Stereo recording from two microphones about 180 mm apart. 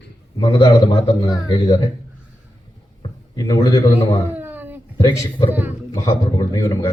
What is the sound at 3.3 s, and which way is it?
Speech, 20° left (ahead or behind).